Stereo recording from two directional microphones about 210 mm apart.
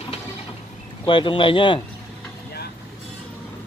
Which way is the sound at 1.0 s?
25° left (ahead or behind).